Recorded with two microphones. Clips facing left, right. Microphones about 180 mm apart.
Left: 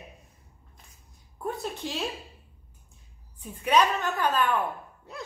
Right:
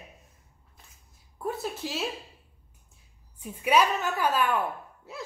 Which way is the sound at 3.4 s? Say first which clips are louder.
Even; 10° right (ahead or behind).